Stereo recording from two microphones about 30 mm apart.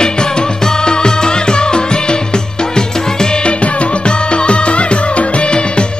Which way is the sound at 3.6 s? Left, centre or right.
Left.